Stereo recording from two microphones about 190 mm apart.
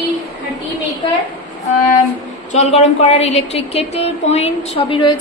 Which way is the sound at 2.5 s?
35° left (ahead or behind).